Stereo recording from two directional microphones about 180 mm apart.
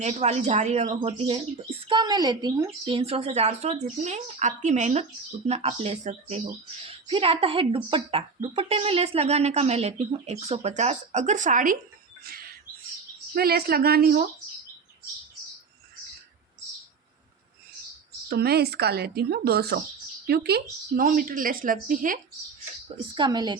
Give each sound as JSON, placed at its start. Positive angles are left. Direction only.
{"t": 0.0, "sound": "speech", "side_deg": -40}
{"t": 13.3, "sound": "speech", "side_deg": -60}
{"t": 18.3, "sound": "speech", "side_deg": -60}
{"t": 23.1, "sound": "a woman's voice", "side_deg": -25}